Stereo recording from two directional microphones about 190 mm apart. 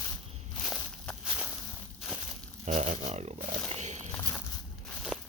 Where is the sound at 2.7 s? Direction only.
40° right (ahead or behind).